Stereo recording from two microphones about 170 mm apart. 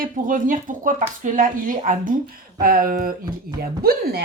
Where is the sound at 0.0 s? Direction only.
50° right (ahead or behind).